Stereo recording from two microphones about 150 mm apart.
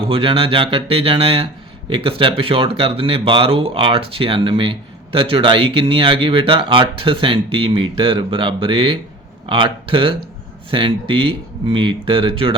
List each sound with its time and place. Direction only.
0.1 s speech: 35° right (ahead or behind)